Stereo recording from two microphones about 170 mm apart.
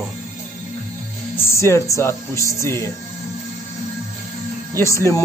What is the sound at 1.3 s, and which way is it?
Speech, 15° left (ahead or behind).